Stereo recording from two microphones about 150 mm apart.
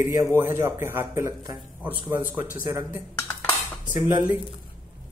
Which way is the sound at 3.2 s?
20° left (ahead or behind).